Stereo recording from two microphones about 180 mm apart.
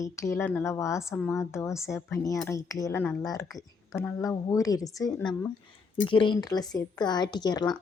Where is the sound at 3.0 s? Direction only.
10° left (ahead or behind).